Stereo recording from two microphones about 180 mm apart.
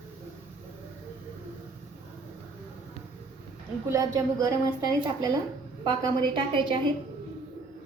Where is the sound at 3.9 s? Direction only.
20° right (ahead or behind).